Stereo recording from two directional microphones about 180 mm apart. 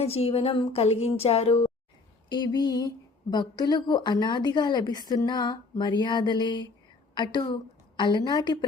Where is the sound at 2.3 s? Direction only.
25° left (ahead or behind).